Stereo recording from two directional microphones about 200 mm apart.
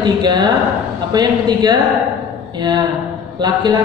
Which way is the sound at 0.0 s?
20° right (ahead or behind).